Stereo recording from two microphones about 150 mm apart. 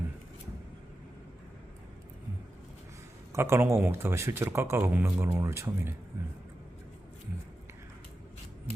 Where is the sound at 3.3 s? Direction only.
15° right (ahead or behind).